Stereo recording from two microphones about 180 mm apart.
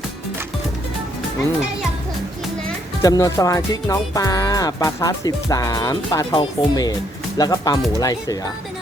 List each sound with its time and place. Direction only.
3.0 s speech: 20° left (ahead or behind)